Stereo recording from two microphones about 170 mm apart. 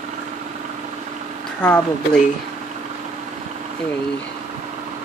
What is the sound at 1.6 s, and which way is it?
Speech, 5° left (ahead or behind).